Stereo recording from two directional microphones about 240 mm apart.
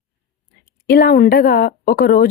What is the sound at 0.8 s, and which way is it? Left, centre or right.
A woman's voice, left.